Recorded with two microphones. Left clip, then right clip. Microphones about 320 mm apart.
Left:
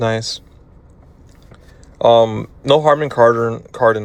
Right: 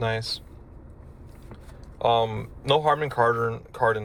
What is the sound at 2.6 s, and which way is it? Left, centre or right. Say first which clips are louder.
Speech: left 9 dB; left.